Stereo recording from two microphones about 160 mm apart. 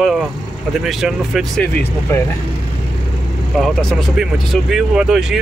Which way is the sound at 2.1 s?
15° left (ahead or behind).